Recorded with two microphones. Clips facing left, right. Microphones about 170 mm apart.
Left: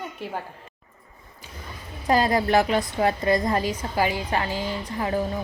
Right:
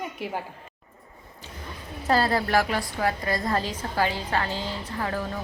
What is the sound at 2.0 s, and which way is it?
A woman's voice, 15° left (ahead or behind).